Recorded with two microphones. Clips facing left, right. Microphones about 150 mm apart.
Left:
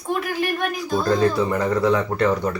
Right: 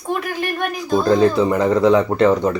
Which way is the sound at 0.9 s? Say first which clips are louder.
Right 5 dB; 20° right (ahead or behind).